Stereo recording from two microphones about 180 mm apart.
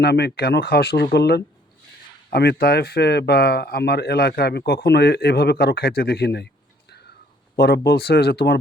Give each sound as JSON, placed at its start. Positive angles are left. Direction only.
{"t": 0.0, "sound": "speech", "side_deg": 65}
{"t": 7.5, "sound": "speech", "side_deg": 60}